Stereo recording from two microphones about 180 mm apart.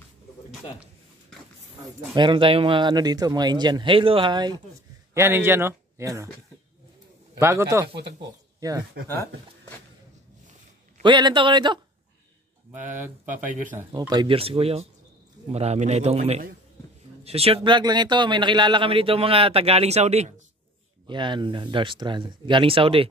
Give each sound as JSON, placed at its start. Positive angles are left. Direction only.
{"t": 2.1, "sound": "speech", "side_deg": -25}
{"t": 5.1, "sound": "speech", "side_deg": -15}
{"t": 7.3, "sound": "a man's voice", "side_deg": -15}
{"t": 7.9, "sound": "speech", "side_deg": -70}
{"t": 8.5, "sound": "speech", "side_deg": -20}
{"t": 9.1, "sound": "speech", "side_deg": 15}
{"t": 11.0, "sound": "speech", "side_deg": -25}
{"t": 13.5, "sound": "speech", "side_deg": -45}
{"t": 13.7, "sound": "speech", "side_deg": -25}
{"t": 21.1, "sound": "speech", "side_deg": -25}